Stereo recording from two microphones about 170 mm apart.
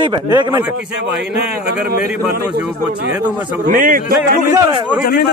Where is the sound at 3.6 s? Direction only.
55° right (ahead or behind).